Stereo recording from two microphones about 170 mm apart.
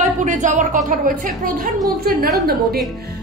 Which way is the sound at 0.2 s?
45° right (ahead or behind).